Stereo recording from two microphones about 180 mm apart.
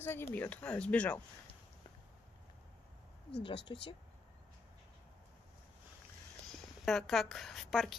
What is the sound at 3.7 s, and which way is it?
Speech, 30° left (ahead or behind).